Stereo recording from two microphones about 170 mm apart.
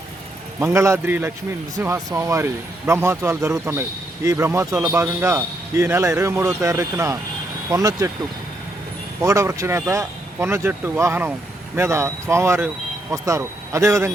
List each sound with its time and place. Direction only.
0.6 s speech: 15° right (ahead or behind)
9.2 s speech: 15° right (ahead or behind)